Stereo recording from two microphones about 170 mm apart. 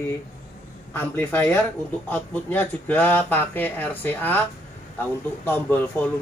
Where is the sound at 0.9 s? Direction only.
10° left (ahead or behind).